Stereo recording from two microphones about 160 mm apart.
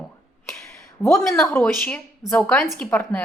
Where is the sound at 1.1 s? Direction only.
5° left (ahead or behind).